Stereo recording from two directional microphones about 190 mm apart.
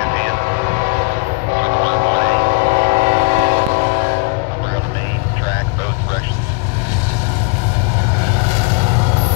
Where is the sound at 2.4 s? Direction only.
40° right (ahead or behind).